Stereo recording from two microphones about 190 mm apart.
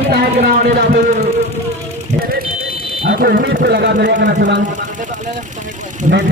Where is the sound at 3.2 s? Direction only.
55° right (ahead or behind).